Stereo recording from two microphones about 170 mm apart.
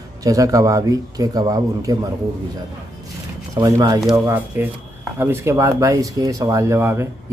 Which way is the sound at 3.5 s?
20° right (ahead or behind).